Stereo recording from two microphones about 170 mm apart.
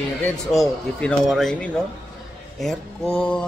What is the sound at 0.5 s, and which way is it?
Speech, centre (ahead or behind).